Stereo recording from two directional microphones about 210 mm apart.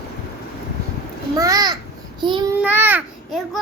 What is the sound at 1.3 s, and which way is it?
Speech, 15° right (ahead or behind).